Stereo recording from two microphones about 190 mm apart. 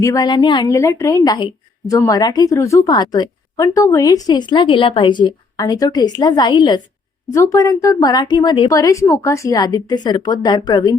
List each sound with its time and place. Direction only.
0.0 s a woman's voice: 20° left (ahead or behind)